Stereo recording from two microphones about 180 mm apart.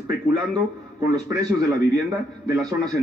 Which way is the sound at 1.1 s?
20° right (ahead or behind).